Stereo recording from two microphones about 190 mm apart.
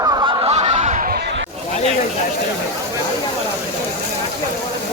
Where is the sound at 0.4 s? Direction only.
35° right (ahead or behind).